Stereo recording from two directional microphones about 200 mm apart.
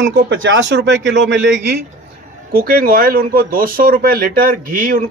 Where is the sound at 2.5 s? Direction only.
50° right (ahead or behind).